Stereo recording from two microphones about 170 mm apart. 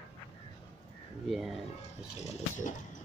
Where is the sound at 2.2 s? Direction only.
40° left (ahead or behind).